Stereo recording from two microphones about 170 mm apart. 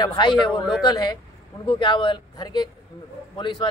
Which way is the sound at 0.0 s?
25° left (ahead or behind).